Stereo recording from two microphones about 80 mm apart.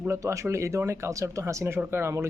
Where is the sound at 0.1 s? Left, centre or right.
Right.